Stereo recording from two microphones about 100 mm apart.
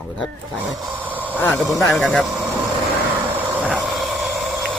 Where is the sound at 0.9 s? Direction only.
15° right (ahead or behind).